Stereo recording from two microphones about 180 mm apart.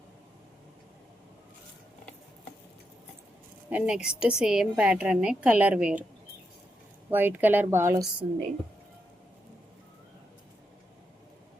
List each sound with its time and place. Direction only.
3.7 s a woman's voice: 5° right (ahead or behind)
7.1 s speech: 10° right (ahead or behind)